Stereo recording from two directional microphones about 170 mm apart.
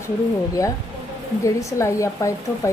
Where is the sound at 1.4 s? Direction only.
20° left (ahead or behind).